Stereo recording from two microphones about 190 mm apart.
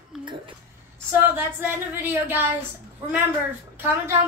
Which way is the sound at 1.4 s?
10° right (ahead or behind).